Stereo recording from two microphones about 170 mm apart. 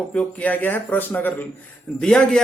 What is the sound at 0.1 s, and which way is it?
Speech, 10° left (ahead or behind).